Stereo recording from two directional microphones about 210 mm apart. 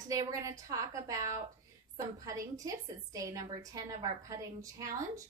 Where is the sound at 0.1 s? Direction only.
15° right (ahead or behind).